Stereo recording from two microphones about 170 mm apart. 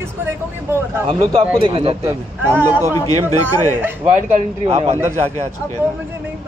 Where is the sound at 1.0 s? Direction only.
35° right (ahead or behind).